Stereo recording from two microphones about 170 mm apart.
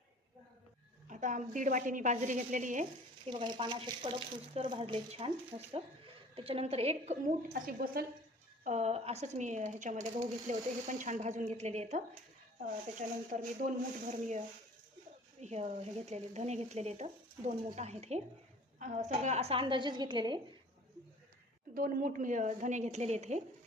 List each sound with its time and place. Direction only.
1.0 s speech: 45° right (ahead or behind)
3.2 s speech: 25° right (ahead or behind)
7.5 s a woman's voice: 60° right (ahead or behind)
8.6 s speech: 40° right (ahead or behind)
21.8 s speech: 55° right (ahead or behind)